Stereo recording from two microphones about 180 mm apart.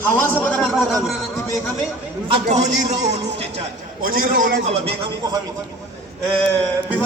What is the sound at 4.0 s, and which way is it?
Speech, 55° right (ahead or behind).